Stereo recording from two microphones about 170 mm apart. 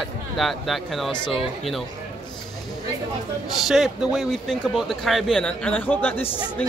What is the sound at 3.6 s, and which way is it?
A man's voice, centre (ahead or behind).